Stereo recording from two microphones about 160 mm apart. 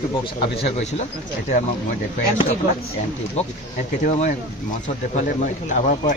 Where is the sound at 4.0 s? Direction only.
55° left (ahead or behind).